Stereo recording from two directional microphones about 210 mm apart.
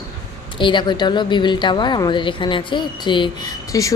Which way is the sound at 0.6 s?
20° left (ahead or behind).